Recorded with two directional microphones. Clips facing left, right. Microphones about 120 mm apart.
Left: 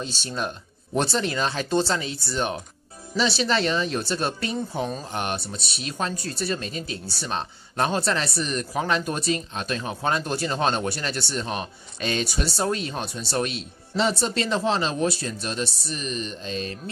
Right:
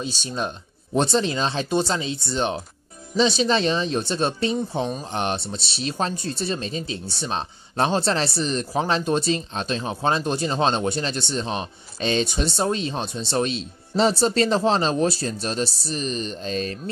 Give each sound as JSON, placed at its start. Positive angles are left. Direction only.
{"t": 0.0, "sound": "speech", "side_deg": -20}